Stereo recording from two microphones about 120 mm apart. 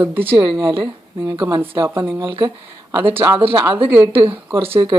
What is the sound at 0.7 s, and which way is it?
Speech, 45° right (ahead or behind).